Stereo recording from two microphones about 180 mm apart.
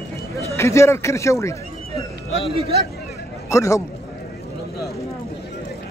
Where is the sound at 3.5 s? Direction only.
15° left (ahead or behind).